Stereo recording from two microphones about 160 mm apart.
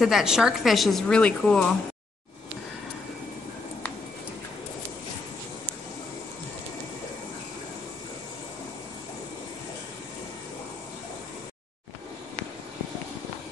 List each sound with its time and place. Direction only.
0.0 s a woman's voice: 5° right (ahead or behind)